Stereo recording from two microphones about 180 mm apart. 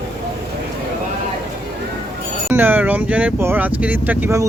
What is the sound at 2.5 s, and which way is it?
Speech, 10° right (ahead or behind).